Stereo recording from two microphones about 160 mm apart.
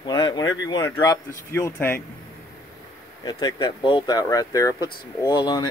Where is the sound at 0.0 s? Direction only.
25° left (ahead or behind).